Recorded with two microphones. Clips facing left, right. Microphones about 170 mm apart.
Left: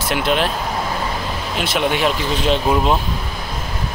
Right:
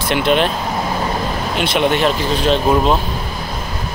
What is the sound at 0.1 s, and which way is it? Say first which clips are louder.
Speech: right 4 dB; 5° left (ahead or behind).